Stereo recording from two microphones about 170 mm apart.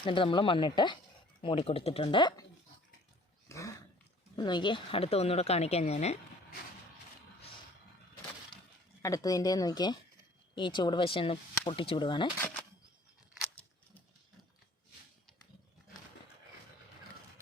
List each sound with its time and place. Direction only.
0.0 s a woman's voice: 30° left (ahead or behind)
3.5 s dog: 20° left (ahead or behind)
4.4 s a woman's voice: 25° left (ahead or behind)
9.0 s a woman's voice: 20° left (ahead or behind)